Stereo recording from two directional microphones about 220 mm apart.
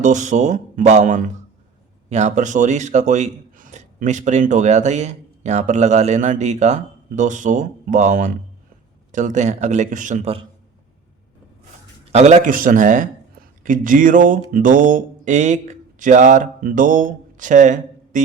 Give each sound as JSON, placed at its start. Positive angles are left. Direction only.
{"t": 0.0, "sound": "speech", "side_deg": -35}
{"t": 12.1, "sound": "speech", "side_deg": -35}
{"t": 13.7, "sound": "a sound", "side_deg": -35}